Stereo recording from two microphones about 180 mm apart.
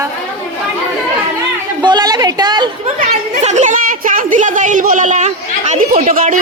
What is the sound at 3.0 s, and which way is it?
A woman's voice, 40° right (ahead or behind).